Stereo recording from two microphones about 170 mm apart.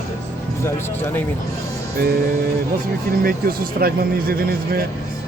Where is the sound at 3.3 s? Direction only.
60° right (ahead or behind).